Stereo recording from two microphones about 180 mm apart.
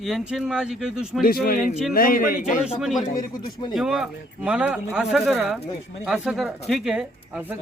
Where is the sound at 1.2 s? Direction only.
50° left (ahead or behind).